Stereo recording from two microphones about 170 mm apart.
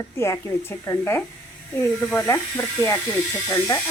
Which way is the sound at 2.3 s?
15° left (ahead or behind).